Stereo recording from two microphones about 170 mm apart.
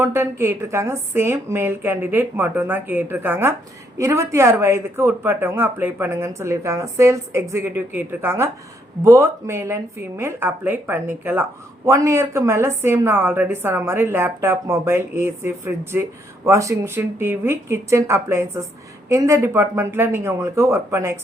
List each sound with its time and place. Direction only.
0.0 s speech: 15° right (ahead or behind)